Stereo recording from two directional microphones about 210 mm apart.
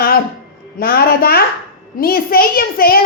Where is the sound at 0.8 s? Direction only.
45° left (ahead or behind).